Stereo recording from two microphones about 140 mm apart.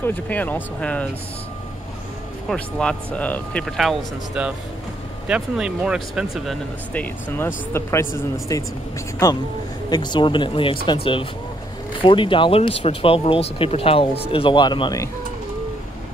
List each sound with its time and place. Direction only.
0.0 s speech: 10° left (ahead or behind)
2.5 s speech: 5° left (ahead or behind)
6.9 s speech: 10° left (ahead or behind)
9.8 s speech: 30° left (ahead or behind)
12.0 s speech: 35° left (ahead or behind)